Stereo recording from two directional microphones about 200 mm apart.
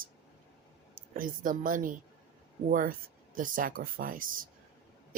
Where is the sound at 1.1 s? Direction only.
45° right (ahead or behind).